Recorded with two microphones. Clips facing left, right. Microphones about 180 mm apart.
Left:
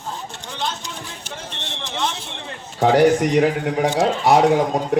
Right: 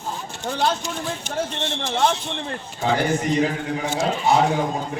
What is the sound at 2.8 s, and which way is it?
A man's voice, 70° left (ahead or behind).